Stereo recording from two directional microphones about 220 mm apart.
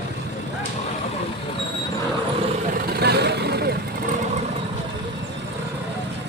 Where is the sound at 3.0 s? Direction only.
50° right (ahead or behind).